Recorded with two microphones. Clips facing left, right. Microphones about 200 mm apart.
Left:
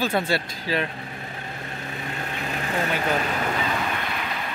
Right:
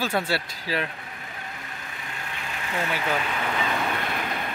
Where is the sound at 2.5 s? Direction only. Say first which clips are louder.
Left 3 dB; 40° left (ahead or behind).